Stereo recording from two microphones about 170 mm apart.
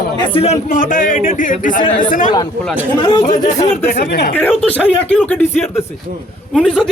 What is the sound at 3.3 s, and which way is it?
Speech, 50° left (ahead or behind).